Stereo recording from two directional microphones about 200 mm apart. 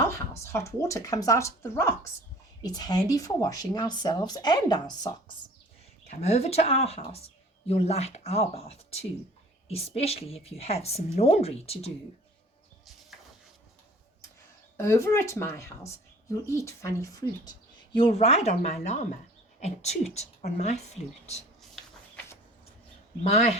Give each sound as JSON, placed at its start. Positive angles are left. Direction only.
{"t": 0.0, "sound": "speech", "side_deg": 15}
{"t": 6.1, "sound": "a woman's voice", "side_deg": 35}
{"t": 14.8, "sound": "speech", "side_deg": 15}
{"t": 17.9, "sound": "a woman's voice", "side_deg": 30}
{"t": 21.6, "sound": "a sound", "side_deg": 0}
{"t": 23.2, "sound": "a woman's voice", "side_deg": 35}